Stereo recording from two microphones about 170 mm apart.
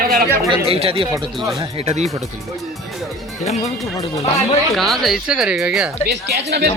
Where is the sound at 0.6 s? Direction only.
35° right (ahead or behind).